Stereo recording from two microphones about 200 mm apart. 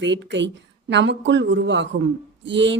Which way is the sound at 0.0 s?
65° right (ahead or behind).